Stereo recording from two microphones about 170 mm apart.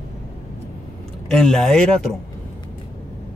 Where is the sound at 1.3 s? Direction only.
5° left (ahead or behind).